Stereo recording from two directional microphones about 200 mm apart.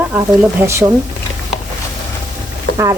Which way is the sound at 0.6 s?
15° right (ahead or behind).